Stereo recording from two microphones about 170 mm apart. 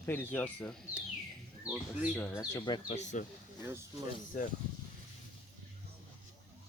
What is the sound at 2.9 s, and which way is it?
Speech, 45° left (ahead or behind).